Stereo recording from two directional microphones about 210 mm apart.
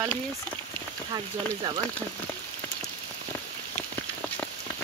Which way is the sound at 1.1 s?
20° right (ahead or behind).